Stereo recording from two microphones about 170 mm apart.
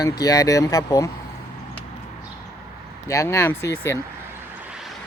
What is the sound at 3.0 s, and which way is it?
Speech, 15° left (ahead or behind).